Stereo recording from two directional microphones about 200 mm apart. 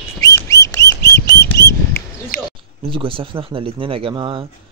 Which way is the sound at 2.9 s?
25° right (ahead or behind).